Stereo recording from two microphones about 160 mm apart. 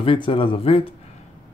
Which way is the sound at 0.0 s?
35° left (ahead or behind).